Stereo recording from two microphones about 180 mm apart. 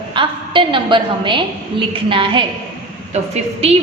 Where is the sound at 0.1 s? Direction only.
25° right (ahead or behind).